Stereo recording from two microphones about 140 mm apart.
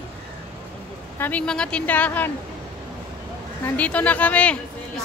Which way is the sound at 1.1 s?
10° left (ahead or behind).